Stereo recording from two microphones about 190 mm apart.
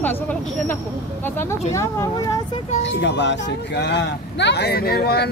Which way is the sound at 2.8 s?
70° left (ahead or behind).